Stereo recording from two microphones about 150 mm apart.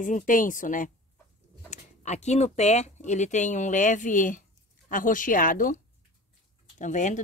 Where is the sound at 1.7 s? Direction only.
50° left (ahead or behind).